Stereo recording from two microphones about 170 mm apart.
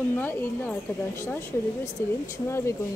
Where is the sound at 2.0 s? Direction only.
15° left (ahead or behind).